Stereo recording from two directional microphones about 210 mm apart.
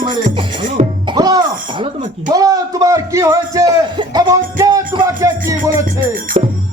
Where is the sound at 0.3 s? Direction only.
25° right (ahead or behind).